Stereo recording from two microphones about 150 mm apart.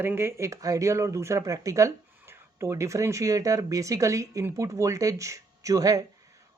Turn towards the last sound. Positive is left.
turn(degrees=-25)  # may be behind; listen again after turning